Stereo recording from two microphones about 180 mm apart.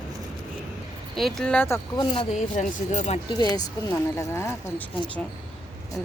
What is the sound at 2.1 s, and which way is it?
Speech, 40° left (ahead or behind).